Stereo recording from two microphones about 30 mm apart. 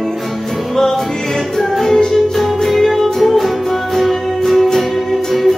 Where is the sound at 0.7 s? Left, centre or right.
Centre.